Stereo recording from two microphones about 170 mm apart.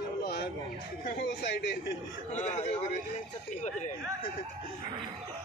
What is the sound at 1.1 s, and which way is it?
Speech, 90° left.